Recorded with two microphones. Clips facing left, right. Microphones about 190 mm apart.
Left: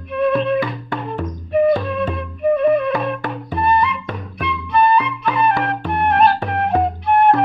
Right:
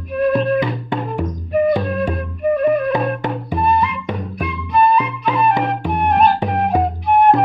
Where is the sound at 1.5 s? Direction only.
Centre (ahead or behind).